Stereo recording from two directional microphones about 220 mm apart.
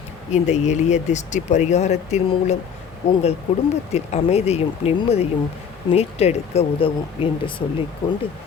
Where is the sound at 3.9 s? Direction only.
30° left (ahead or behind).